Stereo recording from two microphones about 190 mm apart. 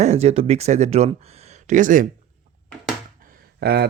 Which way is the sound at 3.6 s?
60° right (ahead or behind).